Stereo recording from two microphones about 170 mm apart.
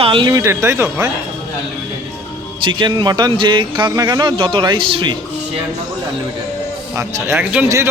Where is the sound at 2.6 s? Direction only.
25° right (ahead or behind).